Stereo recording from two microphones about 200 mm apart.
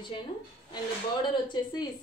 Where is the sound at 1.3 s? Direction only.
20° left (ahead or behind).